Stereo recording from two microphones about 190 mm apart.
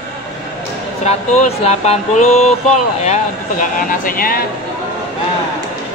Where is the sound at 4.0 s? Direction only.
50° left (ahead or behind).